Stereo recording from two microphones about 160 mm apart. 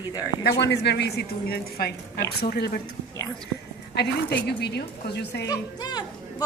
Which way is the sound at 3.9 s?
90° left.